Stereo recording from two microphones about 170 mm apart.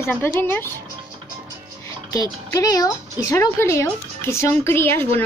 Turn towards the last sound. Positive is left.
turn(degrees=15)  # may be behind; listen again after turning